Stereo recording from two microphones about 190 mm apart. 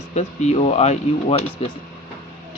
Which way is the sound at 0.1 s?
35° left (ahead or behind).